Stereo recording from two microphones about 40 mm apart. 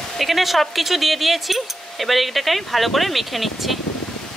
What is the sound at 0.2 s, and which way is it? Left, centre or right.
Speech, centre.